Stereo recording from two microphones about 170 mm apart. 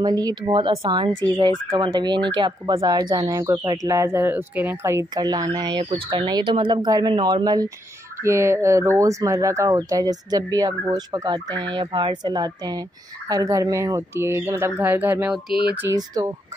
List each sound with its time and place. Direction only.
0.0 s speech: 25° right (ahead or behind)